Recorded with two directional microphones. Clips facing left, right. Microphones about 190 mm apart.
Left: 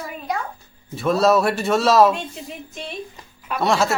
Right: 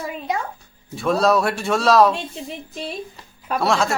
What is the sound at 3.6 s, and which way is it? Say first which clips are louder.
Speech: left 1 dB; centre (ahead or behind).